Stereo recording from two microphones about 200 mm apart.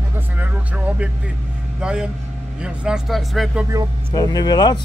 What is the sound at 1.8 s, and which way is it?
Speech, 5° right (ahead or behind).